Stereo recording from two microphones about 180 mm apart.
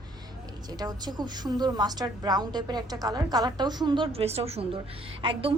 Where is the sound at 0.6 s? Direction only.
20° right (ahead or behind).